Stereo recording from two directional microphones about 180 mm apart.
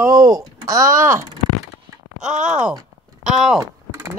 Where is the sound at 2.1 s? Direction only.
45° right (ahead or behind).